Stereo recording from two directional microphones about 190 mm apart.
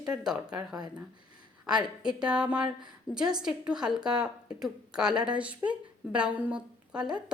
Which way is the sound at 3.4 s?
5° right (ahead or behind).